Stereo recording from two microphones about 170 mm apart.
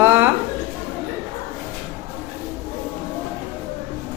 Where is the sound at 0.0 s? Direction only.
10° right (ahead or behind).